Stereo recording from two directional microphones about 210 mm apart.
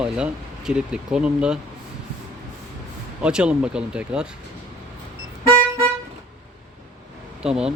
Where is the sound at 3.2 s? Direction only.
5° right (ahead or behind).